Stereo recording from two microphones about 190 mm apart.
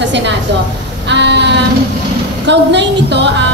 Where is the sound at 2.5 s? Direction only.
65° right (ahead or behind).